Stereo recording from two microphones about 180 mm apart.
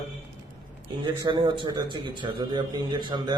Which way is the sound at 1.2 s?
25° right (ahead or behind).